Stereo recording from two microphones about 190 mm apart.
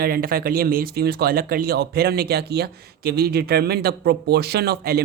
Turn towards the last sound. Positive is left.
turn(degrees=-55)  # may be behind; listen again after turning